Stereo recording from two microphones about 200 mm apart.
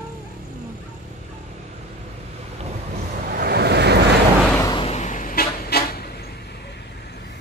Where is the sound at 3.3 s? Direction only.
50° right (ahead or behind).